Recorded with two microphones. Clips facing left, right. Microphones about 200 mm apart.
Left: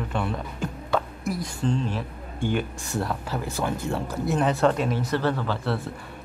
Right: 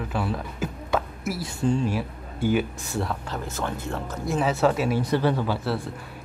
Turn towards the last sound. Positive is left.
turn(degrees=-5)  # may be behind; listen again after turning